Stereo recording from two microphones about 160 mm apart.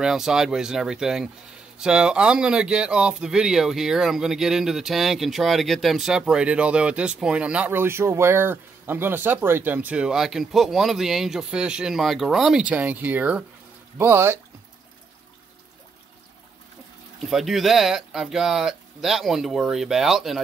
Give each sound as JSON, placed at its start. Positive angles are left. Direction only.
{"t": 0.0, "sound": "speech", "side_deg": -5}
{"t": 17.2, "sound": "speech", "side_deg": 0}